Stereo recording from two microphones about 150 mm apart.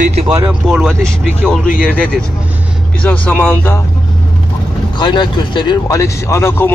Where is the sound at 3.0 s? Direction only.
10° left (ahead or behind).